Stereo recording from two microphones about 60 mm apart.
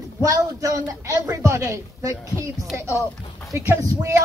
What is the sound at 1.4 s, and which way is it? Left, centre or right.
Speech, right.